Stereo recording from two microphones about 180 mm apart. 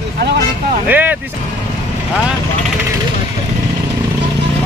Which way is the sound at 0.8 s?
10° right (ahead or behind).